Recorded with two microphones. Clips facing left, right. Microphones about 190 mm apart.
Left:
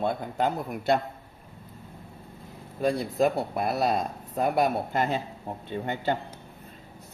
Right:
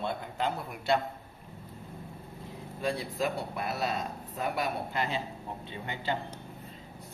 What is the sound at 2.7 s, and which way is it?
Speech, 45° left (ahead or behind).